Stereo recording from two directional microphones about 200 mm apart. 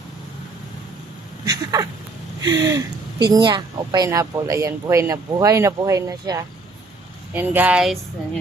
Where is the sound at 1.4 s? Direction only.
20° right (ahead or behind).